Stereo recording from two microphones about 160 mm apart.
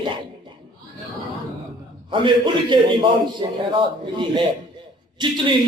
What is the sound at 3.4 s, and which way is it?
Speech, 30° right (ahead or behind).